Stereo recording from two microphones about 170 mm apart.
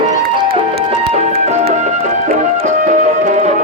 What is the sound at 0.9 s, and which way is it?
Music, 40° right (ahead or behind).